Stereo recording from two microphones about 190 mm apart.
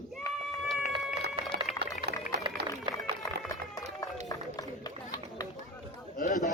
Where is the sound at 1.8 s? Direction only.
60° right (ahead or behind).